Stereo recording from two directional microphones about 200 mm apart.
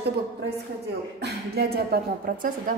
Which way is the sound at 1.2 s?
50° right (ahead or behind).